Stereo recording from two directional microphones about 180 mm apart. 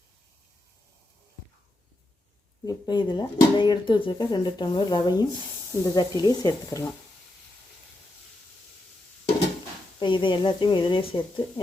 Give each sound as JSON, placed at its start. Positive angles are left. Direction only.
{"t": 2.6, "sound": "speech", "side_deg": 25}
{"t": 10.0, "sound": "speech", "side_deg": 25}